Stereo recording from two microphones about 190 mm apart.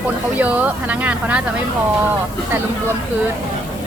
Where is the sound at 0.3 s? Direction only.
10° right (ahead or behind).